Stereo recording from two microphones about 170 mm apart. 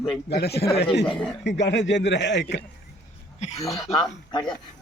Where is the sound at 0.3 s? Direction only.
75° left (ahead or behind).